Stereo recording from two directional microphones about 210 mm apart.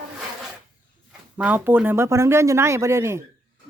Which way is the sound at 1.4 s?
5° right (ahead or behind).